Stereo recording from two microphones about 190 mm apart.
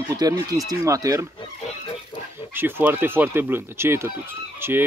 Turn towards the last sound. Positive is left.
turn(degrees=-10)  # may be behind; listen again after turning